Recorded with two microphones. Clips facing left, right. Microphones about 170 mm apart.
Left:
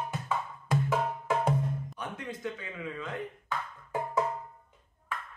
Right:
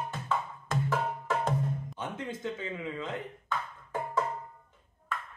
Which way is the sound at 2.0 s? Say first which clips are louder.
Right 1 dB; 25° right (ahead or behind).